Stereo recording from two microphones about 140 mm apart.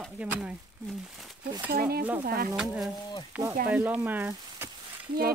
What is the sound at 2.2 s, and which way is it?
Speech, 90° right.